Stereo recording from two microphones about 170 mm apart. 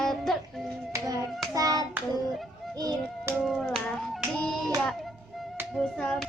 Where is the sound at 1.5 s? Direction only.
20° right (ahead or behind).